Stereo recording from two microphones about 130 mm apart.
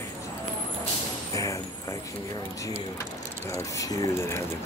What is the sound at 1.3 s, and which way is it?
Speech, 25° left (ahead or behind).